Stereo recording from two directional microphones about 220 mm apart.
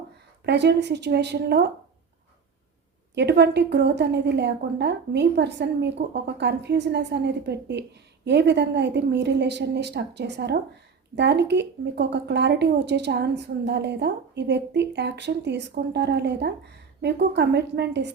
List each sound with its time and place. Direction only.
0.4 s a woman's voice: 50° right (ahead or behind)
3.2 s a woman's voice: 50° right (ahead or behind)